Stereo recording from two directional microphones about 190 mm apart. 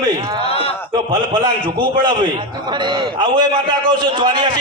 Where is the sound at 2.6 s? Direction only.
25° right (ahead or behind).